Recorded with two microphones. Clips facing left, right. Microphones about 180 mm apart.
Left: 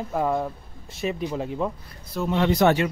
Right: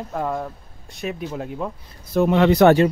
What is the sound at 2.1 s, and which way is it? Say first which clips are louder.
Speech: right 7 dB; 65° right (ahead or behind).